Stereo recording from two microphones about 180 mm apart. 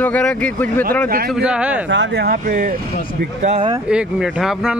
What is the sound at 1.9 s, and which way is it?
Speech, 80° right.